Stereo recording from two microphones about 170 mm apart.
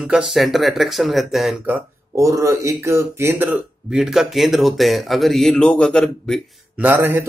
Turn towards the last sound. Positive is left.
turn(degrees=-10)  # may be behind; listen again after turning